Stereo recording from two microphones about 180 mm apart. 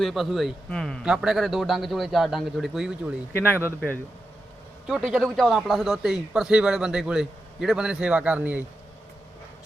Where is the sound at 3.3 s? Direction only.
10° left (ahead or behind).